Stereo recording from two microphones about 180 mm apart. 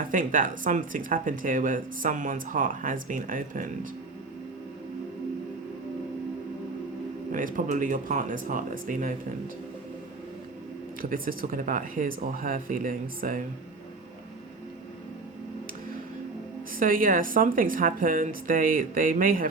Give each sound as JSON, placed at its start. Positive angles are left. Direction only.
{"t": 0.1, "sound": "speech", "side_deg": -45}
{"t": 7.3, "sound": "speech", "side_deg": -45}
{"t": 11.0, "sound": "speech", "side_deg": -50}
{"t": 16.7, "sound": "speech", "side_deg": -50}